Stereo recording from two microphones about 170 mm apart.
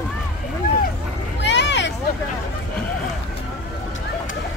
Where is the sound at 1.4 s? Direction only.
90° left.